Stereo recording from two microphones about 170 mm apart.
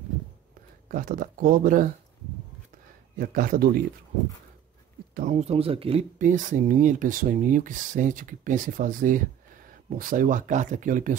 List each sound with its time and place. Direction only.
0.8 s speech: 55° right (ahead or behind)
3.2 s speech: 55° right (ahead or behind)
5.1 s speech: 45° right (ahead or behind)
6.1 s speech: 50° right (ahead or behind)